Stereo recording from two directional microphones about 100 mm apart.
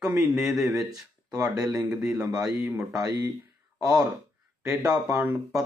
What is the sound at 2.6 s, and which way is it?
Speech, 10° right (ahead or behind).